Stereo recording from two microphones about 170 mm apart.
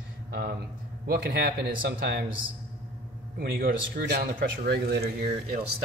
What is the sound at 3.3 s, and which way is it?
Speech, 60° right (ahead or behind).